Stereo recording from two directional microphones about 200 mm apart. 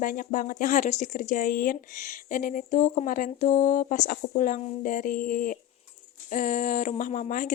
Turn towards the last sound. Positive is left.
turn(degrees=40)  # may be behind; listen again after turning